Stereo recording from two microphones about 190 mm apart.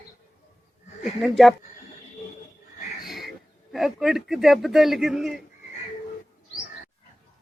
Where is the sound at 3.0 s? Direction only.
Centre (ahead or behind).